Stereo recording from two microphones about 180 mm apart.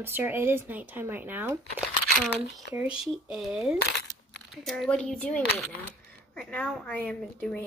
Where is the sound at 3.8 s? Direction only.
65° left (ahead or behind).